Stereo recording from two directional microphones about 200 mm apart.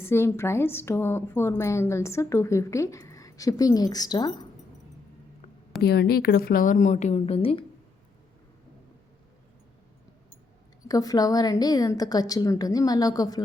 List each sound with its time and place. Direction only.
0.0 s a woman's voice: 10° left (ahead or behind)
5.8 s a woman's voice: 50° left (ahead or behind); by 7.6 s 30° left (ahead or behind)
10.8 s a woman's voice: 20° left (ahead or behind)